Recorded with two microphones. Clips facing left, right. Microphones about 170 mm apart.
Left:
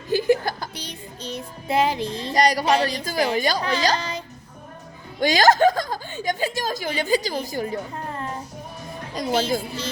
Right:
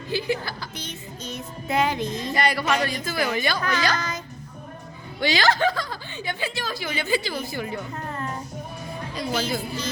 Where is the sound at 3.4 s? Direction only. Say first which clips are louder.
Left 2 dB; 35° left (ahead or behind).